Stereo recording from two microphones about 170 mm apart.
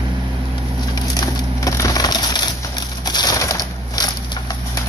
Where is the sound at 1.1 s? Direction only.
20° left (ahead or behind).